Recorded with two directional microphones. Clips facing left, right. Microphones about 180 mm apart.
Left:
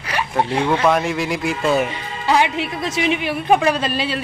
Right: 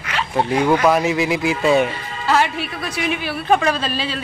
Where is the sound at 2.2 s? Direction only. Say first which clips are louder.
Left 1 dB; 15° left (ahead or behind).